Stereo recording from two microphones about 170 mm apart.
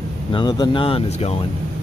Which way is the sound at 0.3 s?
25° left (ahead or behind).